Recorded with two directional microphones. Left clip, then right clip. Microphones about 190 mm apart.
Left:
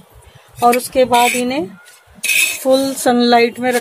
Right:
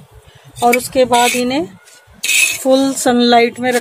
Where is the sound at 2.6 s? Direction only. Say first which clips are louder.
Right 1 dB; 15° right (ahead or behind).